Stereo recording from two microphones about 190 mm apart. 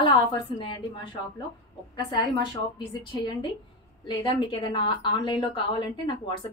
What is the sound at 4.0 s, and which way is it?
A woman's voice, 25° left (ahead or behind).